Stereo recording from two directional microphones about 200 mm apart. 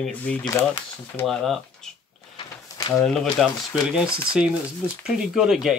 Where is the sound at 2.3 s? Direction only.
20° left (ahead or behind).